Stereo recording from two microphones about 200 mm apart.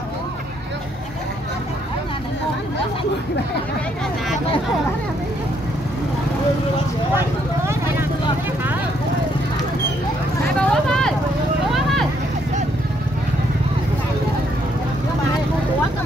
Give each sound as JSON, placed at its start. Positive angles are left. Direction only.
{"t": 7.2, "sound": "vehicle", "side_deg": -10}
{"t": 10.6, "sound": "vehicle", "side_deg": 5}